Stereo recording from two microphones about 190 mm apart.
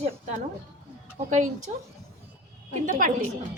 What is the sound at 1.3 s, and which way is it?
Speech, 40° right (ahead or behind).